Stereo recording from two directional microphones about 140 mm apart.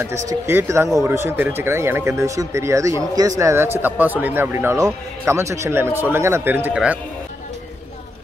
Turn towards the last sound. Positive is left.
turn(degrees=-10)  # may be behind; listen again after turning